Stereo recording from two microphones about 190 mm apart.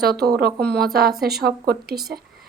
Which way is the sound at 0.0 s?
55° right (ahead or behind).